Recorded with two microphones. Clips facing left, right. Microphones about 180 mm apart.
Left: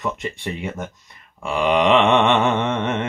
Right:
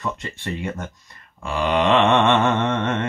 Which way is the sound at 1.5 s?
15° left (ahead or behind).